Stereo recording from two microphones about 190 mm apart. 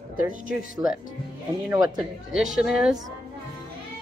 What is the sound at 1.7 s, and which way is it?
Speech, 20° right (ahead or behind).